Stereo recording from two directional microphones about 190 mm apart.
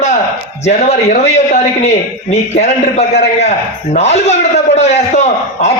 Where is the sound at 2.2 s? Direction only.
35° left (ahead or behind).